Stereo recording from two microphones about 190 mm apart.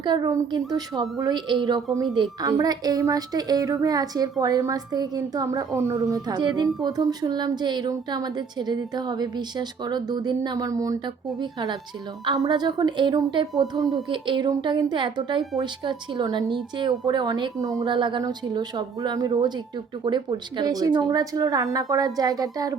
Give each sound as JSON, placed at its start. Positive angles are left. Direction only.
{"t": 0.0, "sound": "a woman's voice", "side_deg": -20}
{"t": 13.5, "sound": "a woman's voice", "side_deg": 0}
{"t": 14.1, "sound": "a woman's voice", "side_deg": -25}